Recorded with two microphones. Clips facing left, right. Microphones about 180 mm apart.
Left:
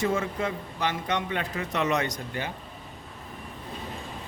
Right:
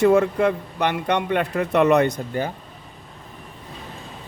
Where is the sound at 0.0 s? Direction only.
65° right (ahead or behind); by 2.5 s 50° right (ahead or behind).